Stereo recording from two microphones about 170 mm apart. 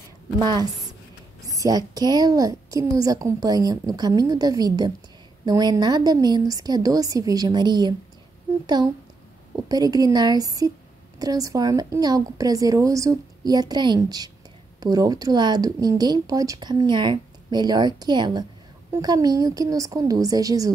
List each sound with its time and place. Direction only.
1.4 s speech: 20° right (ahead or behind)